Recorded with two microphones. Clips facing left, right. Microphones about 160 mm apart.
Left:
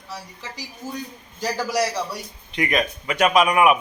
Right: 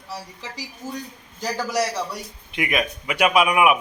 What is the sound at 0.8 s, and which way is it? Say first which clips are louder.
Speech: even; 30° left (ahead or behind).